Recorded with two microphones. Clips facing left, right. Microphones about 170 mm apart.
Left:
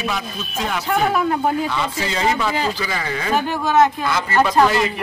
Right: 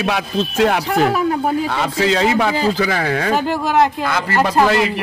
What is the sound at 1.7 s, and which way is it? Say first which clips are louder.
Speech: right 6 dB; 65° right (ahead or behind).